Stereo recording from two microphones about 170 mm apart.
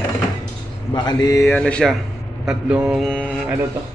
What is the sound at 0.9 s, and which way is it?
A man's voice, 25° left (ahead or behind).